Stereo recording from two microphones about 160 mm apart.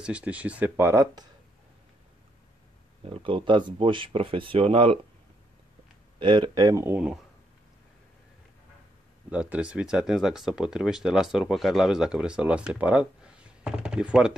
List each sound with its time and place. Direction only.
0.0 s speech: 10° right (ahead or behind)
3.0 s speech: 35° right (ahead or behind)
6.1 s speech: 30° right (ahead or behind)
9.3 s speech: 5° right (ahead or behind)